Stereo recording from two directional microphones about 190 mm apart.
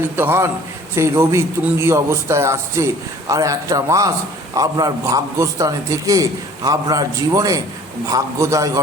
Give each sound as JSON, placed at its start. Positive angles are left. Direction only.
{"t": 0.2, "sound": "a man's voice", "side_deg": -10}